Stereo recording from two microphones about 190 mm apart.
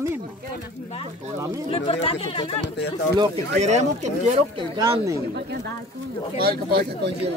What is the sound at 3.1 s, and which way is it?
Speech, 25° right (ahead or behind).